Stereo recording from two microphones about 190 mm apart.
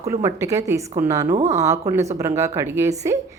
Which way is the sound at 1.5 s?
15° right (ahead or behind).